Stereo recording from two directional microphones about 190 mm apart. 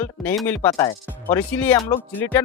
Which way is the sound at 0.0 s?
10° left (ahead or behind).